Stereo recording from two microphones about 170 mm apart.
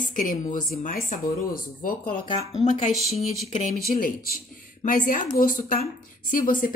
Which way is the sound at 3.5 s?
45° left (ahead or behind).